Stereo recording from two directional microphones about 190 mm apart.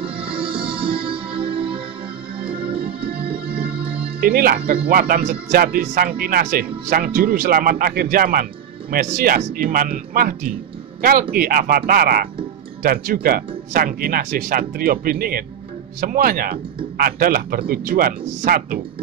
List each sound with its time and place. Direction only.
0.0 s music: 30° right (ahead or behind)
4.2 s speech: 50° right (ahead or behind)